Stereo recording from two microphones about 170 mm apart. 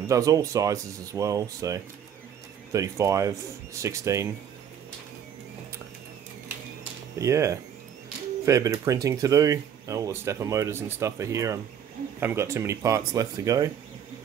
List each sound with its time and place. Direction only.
0.1 s speech: 20° right (ahead or behind)
7.2 s speech: 20° right (ahead or behind)